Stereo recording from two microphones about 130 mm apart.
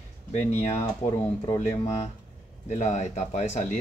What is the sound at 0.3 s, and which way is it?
Speech, 55° left (ahead or behind).